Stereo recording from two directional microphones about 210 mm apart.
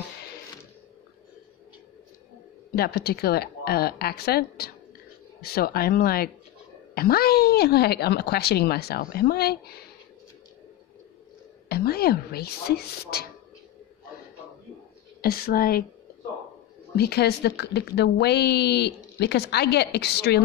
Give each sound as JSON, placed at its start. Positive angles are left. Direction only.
{"t": 2.7, "sound": "a woman's voice", "side_deg": 50}
{"t": 11.7, "sound": "a woman's voice", "side_deg": 50}
{"t": 15.2, "sound": "a woman's voice", "side_deg": 45}
{"t": 16.9, "sound": "a woman's voice", "side_deg": 50}